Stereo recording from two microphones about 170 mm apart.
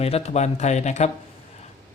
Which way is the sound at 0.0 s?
40° left (ahead or behind).